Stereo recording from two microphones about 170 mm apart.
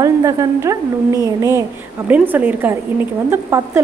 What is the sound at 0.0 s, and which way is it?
A woman's voice, 20° right (ahead or behind).